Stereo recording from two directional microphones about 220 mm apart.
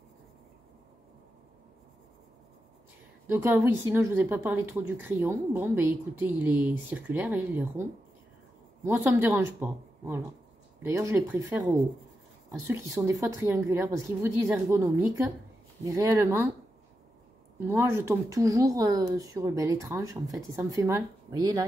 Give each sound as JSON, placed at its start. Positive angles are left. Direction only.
{"t": 3.3, "sound": "speech", "side_deg": -10}
{"t": 8.8, "sound": "speech", "side_deg": -10}
{"t": 17.6, "sound": "speech", "side_deg": -10}